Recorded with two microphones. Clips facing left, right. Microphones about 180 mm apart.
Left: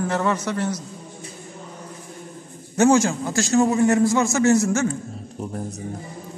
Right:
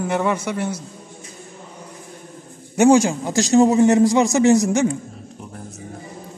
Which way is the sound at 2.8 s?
15° right (ahead or behind).